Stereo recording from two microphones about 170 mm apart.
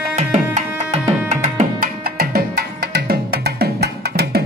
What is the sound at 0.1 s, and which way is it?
Tabla, 45° right (ahead or behind).